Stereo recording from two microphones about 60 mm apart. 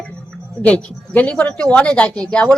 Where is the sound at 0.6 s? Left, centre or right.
Left.